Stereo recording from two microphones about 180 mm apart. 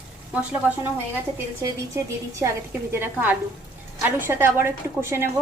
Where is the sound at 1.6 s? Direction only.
15° right (ahead or behind).